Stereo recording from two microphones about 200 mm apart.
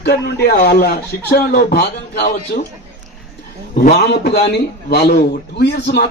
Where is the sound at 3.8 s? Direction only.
55° left (ahead or behind).